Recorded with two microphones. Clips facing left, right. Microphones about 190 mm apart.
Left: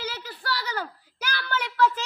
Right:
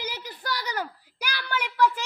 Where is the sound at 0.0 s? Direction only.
15° right (ahead or behind).